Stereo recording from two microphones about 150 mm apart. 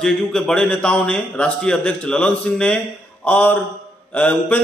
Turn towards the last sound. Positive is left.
turn(degrees=10)  # may be behind; listen again after turning